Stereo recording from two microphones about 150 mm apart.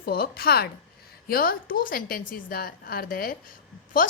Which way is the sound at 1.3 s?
75° left (ahead or behind).